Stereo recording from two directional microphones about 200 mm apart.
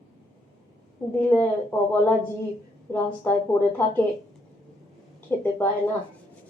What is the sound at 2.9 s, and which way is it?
Speech, 10° left (ahead or behind).